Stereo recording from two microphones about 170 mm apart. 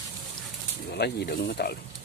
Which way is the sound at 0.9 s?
70° left (ahead or behind).